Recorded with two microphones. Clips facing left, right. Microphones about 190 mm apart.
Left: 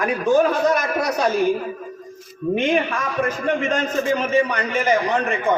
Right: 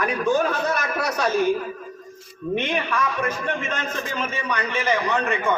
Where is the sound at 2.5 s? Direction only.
45° left (ahead or behind).